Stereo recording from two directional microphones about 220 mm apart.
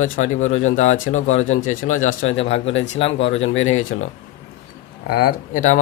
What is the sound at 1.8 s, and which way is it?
Speech, 35° left (ahead or behind).